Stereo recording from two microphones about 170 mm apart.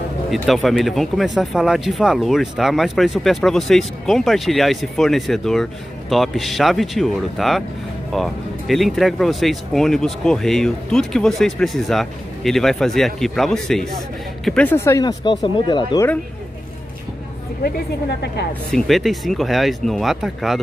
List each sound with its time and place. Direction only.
0.3 s speech: centre (ahead or behind); by 16.1 s 25° left (ahead or behind)
18.2 s speech: 80° left
18.7 s speech: centre (ahead or behind)